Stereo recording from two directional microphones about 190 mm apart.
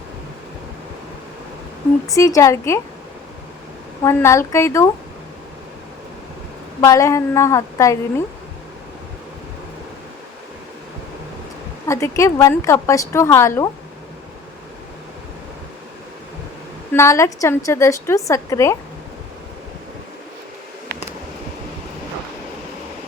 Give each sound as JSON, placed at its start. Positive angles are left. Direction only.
{"t": 2.1, "sound": "a woman's voice", "side_deg": 15}
{"t": 4.0, "sound": "a woman's voice", "side_deg": 15}
{"t": 6.8, "sound": "a woman's voice", "side_deg": 15}
{"t": 11.9, "sound": "a woman's voice", "side_deg": 15}
{"t": 16.9, "sound": "a woman's voice", "side_deg": 15}